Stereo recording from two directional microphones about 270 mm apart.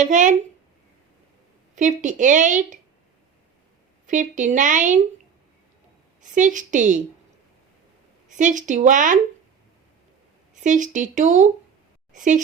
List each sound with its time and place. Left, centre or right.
0.0 s speech: right
1.7 s speech: right
4.0 s speech: right
6.3 s speech: right
8.4 s speech: right
10.6 s speech: right